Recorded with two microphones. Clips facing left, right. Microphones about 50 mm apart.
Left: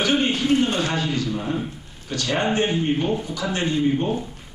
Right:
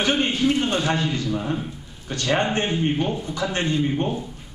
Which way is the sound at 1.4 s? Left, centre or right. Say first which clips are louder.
Left 1 dB; centre.